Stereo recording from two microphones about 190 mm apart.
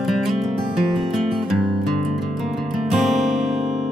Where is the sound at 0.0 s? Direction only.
Centre (ahead or behind).